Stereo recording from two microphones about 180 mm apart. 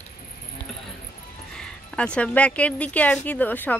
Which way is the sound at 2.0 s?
5° left (ahead or behind).